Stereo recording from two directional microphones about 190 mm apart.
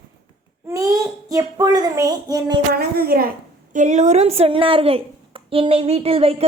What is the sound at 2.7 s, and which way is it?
A woman's voice, 50° right (ahead or behind).